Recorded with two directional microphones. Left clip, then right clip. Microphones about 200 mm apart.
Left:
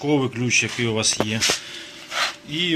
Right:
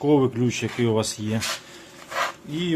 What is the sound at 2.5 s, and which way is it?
Speech, 25° right (ahead or behind).